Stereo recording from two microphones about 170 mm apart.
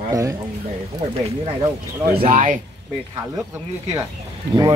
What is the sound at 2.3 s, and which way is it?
Speech, 50° right (ahead or behind).